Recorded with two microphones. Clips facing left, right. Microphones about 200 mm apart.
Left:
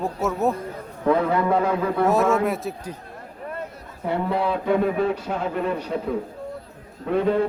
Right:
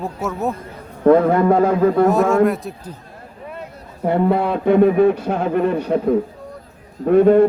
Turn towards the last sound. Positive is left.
turn(degrees=-50)  # may be behind; listen again after turning